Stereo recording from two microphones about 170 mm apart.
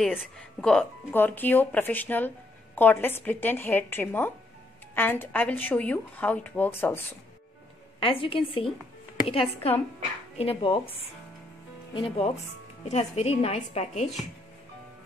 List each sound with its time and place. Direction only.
0.0 s speech: centre (ahead or behind)
8.0 s a woman's voice: 30° left (ahead or behind)